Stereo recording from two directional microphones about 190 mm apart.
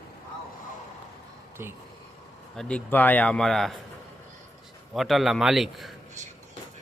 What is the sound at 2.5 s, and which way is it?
A man's voice, 5° left (ahead or behind).